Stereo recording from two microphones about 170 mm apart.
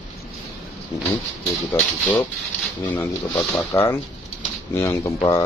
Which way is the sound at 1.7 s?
10° left (ahead or behind).